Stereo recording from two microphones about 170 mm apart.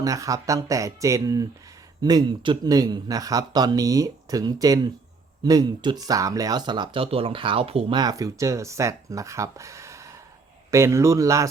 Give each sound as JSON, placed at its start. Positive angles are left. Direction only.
{"t": 0.0, "sound": "speech", "side_deg": -20}